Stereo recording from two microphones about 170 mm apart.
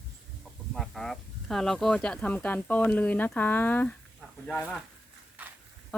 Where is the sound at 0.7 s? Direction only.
Centre (ahead or behind).